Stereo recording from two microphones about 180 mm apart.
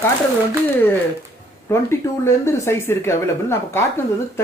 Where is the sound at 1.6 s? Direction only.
15° left (ahead or behind).